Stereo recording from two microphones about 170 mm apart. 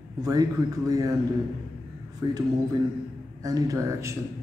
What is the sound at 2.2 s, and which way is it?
A man's voice, 25° right (ahead or behind).